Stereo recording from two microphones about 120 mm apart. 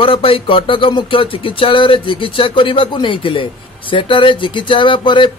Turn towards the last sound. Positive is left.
turn(degrees=40)  # may be behind; listen again after turning